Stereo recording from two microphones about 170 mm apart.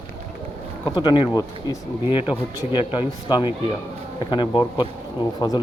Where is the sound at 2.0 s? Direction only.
10° right (ahead or behind).